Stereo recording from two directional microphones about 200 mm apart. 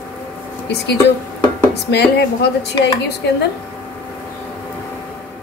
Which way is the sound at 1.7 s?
55° left (ahead or behind).